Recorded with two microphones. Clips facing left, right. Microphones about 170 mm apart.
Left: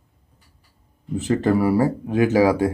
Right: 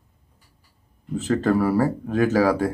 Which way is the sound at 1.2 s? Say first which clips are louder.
Left 1 dB; 15° left (ahead or behind).